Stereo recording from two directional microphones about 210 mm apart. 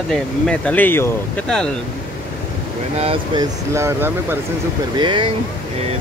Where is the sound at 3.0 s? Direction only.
25° right (ahead or behind).